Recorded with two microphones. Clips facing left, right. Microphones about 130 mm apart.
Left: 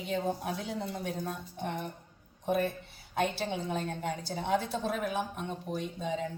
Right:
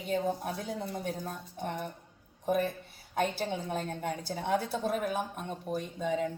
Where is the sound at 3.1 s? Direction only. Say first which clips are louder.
Even; 45° right (ahead or behind).